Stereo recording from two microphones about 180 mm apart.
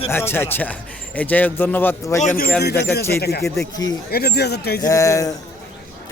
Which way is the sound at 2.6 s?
65° left (ahead or behind).